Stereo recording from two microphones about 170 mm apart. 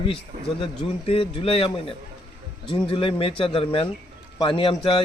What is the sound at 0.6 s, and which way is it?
A man's voice, 35° left (ahead or behind).